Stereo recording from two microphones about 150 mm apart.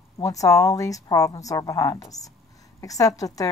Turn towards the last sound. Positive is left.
turn(degrees=25)  # may be behind; listen again after turning